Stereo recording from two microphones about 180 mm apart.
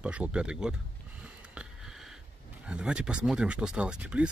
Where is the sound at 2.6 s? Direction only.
5° right (ahead or behind).